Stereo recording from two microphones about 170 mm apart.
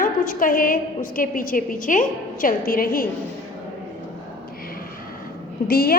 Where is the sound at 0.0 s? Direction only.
55° left (ahead or behind).